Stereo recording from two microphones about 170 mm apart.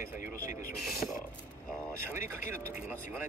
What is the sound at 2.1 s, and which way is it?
Speech, 15° right (ahead or behind).